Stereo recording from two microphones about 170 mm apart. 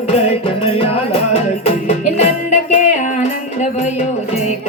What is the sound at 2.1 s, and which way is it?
Music, 40° left (ahead or behind).